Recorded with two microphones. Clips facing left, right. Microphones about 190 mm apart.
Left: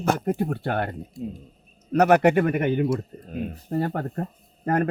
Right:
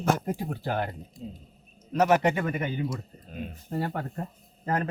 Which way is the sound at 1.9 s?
65° left (ahead or behind).